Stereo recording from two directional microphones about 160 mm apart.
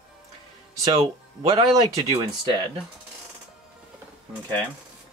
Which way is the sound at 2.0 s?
25° right (ahead or behind).